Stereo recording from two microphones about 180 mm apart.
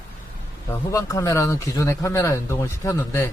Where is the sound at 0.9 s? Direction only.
15° left (ahead or behind).